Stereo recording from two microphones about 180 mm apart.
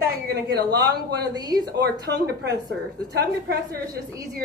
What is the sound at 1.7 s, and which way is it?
A woman's voice, 70° right (ahead or behind).